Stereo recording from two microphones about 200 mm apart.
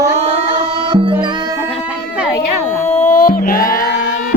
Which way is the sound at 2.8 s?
35° left (ahead or behind).